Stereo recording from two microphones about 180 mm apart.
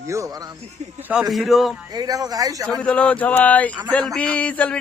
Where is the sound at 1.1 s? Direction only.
Centre (ahead or behind).